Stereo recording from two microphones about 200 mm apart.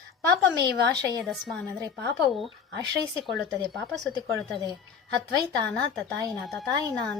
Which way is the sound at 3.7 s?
Centre (ahead or behind).